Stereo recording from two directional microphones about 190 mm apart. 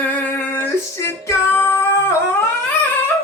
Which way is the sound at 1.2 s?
15° left (ahead or behind).